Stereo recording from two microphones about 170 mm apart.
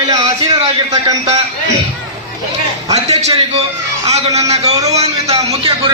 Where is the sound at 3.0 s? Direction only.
40° right (ahead or behind).